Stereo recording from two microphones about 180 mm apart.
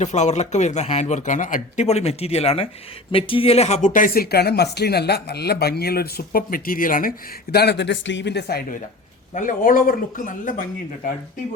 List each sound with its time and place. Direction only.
0.0 s speech: 40° left (ahead or behind)
3.8 s speech: 50° left (ahead or behind)
7.5 s speech: 65° left (ahead or behind)
9.3 s speech: 45° left (ahead or behind)